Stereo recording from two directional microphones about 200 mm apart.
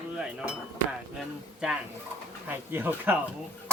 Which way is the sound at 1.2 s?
5° right (ahead or behind).